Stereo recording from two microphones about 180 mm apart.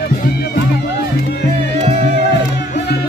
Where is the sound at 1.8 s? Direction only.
40° right (ahead or behind).